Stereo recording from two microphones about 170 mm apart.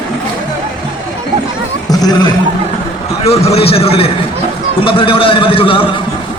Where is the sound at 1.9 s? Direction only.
20° left (ahead or behind).